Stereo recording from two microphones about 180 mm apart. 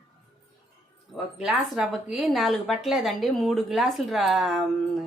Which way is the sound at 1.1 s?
5° right (ahead or behind).